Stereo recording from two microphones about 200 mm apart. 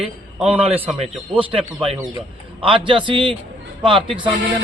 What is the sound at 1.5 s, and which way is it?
A man's voice, 30° right (ahead or behind).